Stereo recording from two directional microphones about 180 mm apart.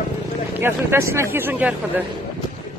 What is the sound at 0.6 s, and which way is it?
Speech, 15° right (ahead or behind).